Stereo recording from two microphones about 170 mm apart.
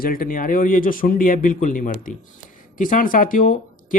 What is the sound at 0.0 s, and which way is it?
A man's voice, 60° left (ahead or behind).